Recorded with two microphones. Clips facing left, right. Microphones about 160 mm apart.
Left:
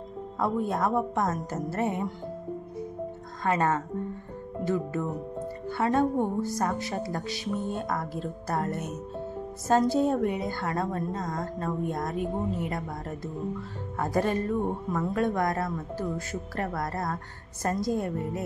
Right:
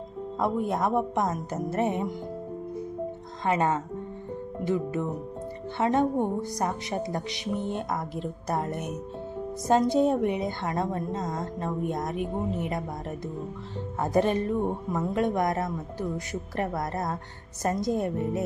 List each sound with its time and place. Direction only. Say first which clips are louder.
0.4 s a woman's voice: right 1 dB; 20° right (ahead or behind)
3.4 s a woman's voice: right 1 dB; 20° right (ahead or behind)